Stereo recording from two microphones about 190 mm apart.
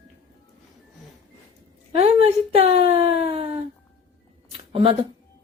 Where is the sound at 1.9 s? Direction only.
30° right (ahead or behind).